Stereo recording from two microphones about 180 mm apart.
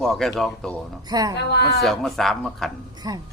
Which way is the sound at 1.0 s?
20° right (ahead or behind).